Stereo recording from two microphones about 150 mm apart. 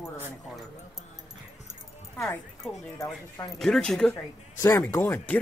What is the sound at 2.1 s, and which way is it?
Speech, centre (ahead or behind).